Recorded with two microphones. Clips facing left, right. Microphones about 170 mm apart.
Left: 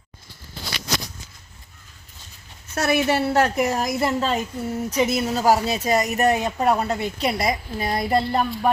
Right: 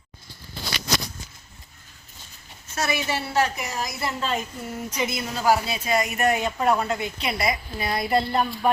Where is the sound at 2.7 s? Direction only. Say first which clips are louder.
Left 6 dB; 60° left (ahead or behind).